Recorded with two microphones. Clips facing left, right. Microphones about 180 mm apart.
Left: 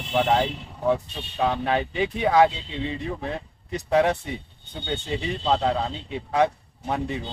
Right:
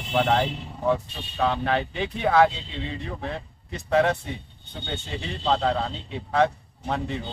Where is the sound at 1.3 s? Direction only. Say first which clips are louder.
Left 1 dB; 15° left (ahead or behind).